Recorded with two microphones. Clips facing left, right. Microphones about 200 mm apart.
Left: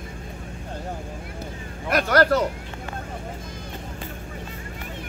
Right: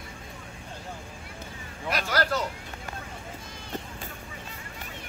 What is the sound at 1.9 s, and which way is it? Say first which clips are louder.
Speech: left 9 dB; 55° left (ahead or behind).